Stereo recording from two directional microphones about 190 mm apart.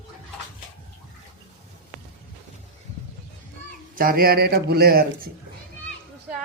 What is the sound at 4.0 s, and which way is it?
A man's voice, 50° right (ahead or behind).